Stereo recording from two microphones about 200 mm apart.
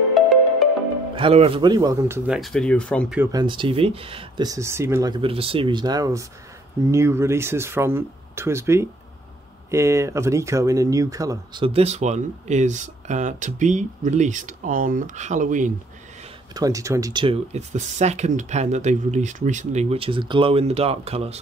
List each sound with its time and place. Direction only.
0.1 s music: centre (ahead or behind)
1.1 s speech: 30° right (ahead or behind); by 3.2 s 5° left (ahead or behind)
3.2 s speech: 20° right (ahead or behind); by 15.7 s 40° right (ahead or behind)
16.5 s speech: 15° right (ahead or behind)